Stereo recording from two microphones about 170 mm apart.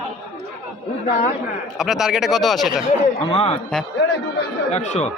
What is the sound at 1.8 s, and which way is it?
Speech, centre (ahead or behind).